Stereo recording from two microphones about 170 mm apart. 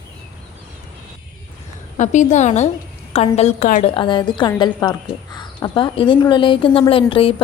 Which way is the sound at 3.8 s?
30° left (ahead or behind).